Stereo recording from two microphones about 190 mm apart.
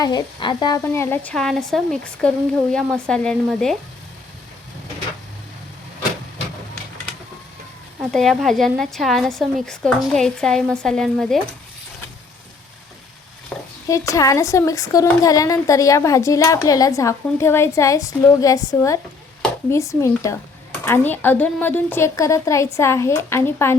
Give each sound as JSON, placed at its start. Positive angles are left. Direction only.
{"t": 0.0, "sound": "a woman's voice", "side_deg": 25}
{"t": 8.1, "sound": "a woman's voice", "side_deg": 0}
{"t": 13.8, "sound": "a woman's voice", "side_deg": 15}